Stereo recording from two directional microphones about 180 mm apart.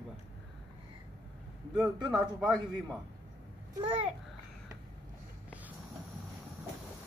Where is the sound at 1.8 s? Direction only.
Centre (ahead or behind).